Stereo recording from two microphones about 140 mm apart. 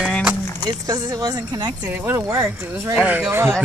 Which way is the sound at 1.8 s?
15° right (ahead or behind).